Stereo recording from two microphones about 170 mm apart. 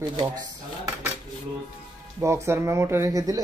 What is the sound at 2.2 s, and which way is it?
Speech, 15° right (ahead or behind).